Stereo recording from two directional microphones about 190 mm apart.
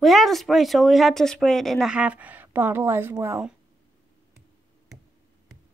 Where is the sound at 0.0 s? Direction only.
Centre (ahead or behind).